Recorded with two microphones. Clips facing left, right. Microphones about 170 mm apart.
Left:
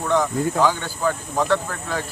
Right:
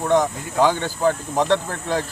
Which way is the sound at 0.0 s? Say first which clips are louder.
Right 1 dB; 20° right (ahead or behind).